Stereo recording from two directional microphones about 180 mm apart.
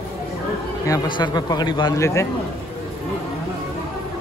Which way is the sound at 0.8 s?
20° left (ahead or behind).